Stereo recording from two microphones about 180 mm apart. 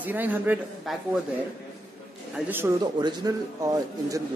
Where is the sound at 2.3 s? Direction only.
10° right (ahead or behind).